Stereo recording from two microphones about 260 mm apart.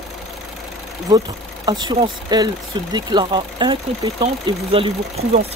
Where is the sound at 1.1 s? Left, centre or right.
Centre.